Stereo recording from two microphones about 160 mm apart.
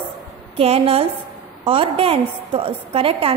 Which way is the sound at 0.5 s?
40° right (ahead or behind).